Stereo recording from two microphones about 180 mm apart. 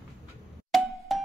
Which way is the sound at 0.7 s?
Centre (ahead or behind).